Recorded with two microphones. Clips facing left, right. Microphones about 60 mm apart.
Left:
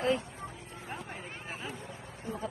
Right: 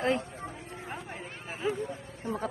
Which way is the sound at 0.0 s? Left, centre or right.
Right.